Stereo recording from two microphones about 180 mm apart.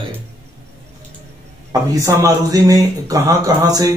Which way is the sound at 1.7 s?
15° right (ahead or behind).